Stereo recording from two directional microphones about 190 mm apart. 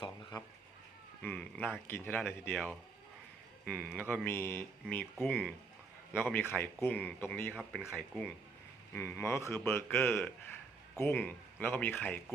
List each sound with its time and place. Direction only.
0.0 s a sound: 20° left (ahead or behind)
1.2 s speech: 10° left (ahead or behind)
3.8 s a man's voice: 10° right (ahead or behind)
4.1 s speech: 10° left (ahead or behind)
7.5 s speech: 5° right (ahead or behind)
7.9 s speech: 10° left (ahead or behind)